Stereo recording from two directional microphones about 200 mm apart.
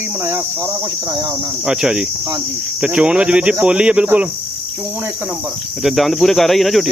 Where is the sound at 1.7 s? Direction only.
5° right (ahead or behind).